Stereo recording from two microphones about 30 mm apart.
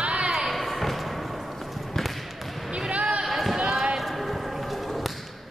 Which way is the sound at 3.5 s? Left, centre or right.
Right.